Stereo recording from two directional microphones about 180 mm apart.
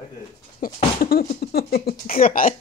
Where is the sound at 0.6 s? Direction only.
50° left (ahead or behind).